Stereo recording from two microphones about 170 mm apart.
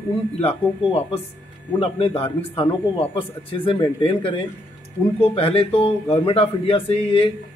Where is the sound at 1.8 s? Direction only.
35° left (ahead or behind).